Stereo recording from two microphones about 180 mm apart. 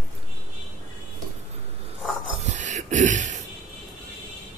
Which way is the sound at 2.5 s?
40° right (ahead or behind).